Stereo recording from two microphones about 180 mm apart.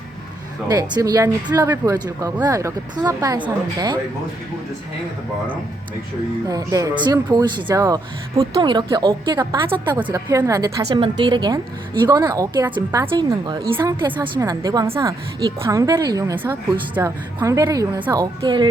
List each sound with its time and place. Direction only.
0.7 s speech: 20° right (ahead or behind)
6.5 s speech: 20° right (ahead or behind)